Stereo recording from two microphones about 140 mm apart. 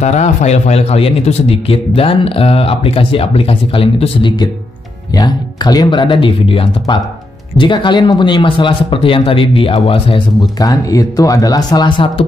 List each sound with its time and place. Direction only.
0.0 s speech: 55° left (ahead or behind)
10.4 s speech: 25° left (ahead or behind)